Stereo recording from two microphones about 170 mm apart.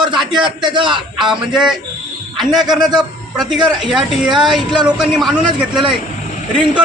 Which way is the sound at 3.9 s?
5° right (ahead or behind).